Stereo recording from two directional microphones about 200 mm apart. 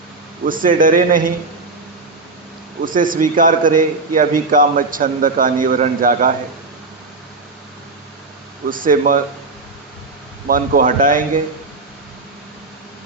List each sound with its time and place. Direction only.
0.4 s a man's voice: 45° right (ahead or behind)
2.8 s a man's voice: 45° right (ahead or behind)
8.7 s a man's voice: 45° right (ahead or behind)
10.4 s a man's voice: 45° right (ahead or behind)